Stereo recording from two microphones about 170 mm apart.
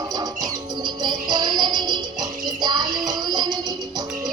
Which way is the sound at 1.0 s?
25° right (ahead or behind).